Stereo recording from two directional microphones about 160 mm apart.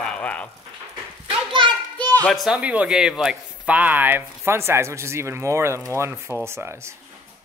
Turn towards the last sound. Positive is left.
turn(degrees=-15)  # may be behind; listen again after turning